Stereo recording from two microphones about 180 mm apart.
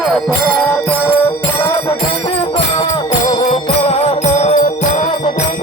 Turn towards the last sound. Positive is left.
turn(degrees=40)  # may be behind; listen again after turning